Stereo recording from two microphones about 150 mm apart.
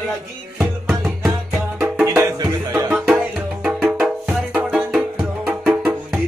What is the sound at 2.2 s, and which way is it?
Music, 20° right (ahead or behind).